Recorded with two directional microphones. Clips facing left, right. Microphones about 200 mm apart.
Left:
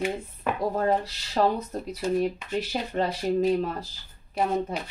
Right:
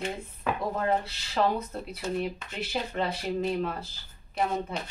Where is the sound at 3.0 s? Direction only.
40° left (ahead or behind).